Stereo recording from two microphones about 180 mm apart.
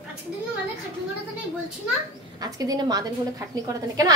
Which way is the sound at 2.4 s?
20° right (ahead or behind).